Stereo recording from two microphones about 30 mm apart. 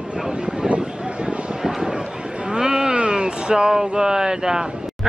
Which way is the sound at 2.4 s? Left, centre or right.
Right.